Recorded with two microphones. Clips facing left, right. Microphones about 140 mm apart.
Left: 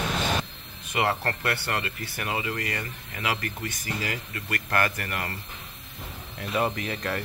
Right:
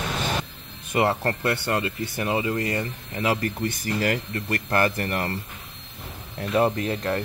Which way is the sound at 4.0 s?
50° right (ahead or behind).